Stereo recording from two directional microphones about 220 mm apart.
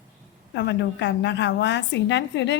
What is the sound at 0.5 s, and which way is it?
A woman's voice, 50° left (ahead or behind).